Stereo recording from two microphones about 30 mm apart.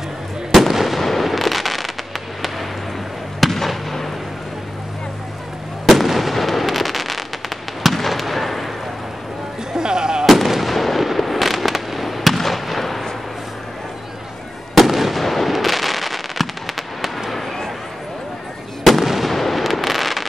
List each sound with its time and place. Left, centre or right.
0.5 s fireworks: centre
3.3 s fireworks: centre
5.9 s fireworks: centre
9.7 s music: right
10.2 s fireworks: centre
14.8 s fireworks: centre
19.0 s fireworks: centre